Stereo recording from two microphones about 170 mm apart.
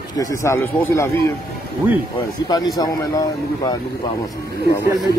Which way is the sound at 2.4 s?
25° left (ahead or behind).